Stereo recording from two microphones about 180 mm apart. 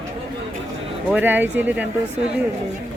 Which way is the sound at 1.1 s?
10° right (ahead or behind).